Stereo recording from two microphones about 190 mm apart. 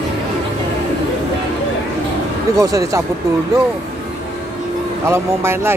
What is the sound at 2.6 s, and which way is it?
Speech, 15° right (ahead or behind).